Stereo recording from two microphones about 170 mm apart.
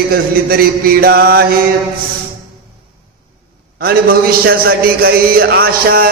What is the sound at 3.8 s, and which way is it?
A man's voice, 60° right (ahead or behind).